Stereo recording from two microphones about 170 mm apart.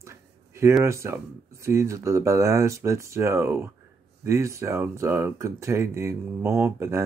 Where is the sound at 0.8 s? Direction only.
15° right (ahead or behind).